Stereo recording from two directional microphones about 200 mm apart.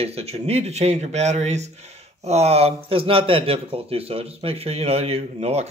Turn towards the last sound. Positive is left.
turn(degrees=-30)  # may be behind; listen again after turning